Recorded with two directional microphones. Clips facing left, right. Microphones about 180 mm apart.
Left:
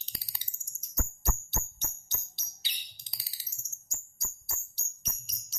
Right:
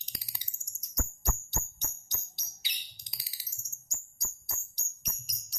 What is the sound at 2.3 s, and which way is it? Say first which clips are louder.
Bird: even; 15° right (ahead or behind).